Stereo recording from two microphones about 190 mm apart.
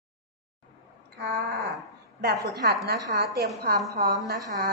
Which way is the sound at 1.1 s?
55° right (ahead or behind).